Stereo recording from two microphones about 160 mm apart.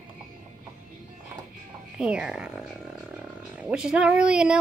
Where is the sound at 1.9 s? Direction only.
5° right (ahead or behind).